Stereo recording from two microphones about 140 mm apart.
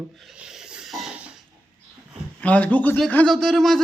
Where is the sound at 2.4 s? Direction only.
10° left (ahead or behind).